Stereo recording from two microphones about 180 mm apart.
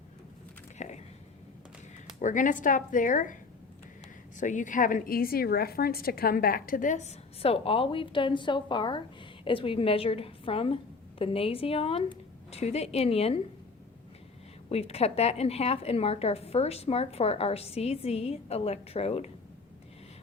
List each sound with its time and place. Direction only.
0.8 s a woman's voice: 40° left (ahead or behind)
2.1 s a woman's voice: 45° left (ahead or behind)
4.4 s a woman's voice: 45° left (ahead or behind)
14.7 s a woman's voice: 35° left (ahead or behind)